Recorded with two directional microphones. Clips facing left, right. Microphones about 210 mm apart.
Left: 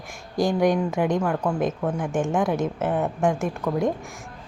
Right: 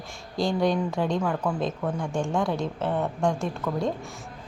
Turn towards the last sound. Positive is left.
turn(degrees=15)  # may be behind; listen again after turning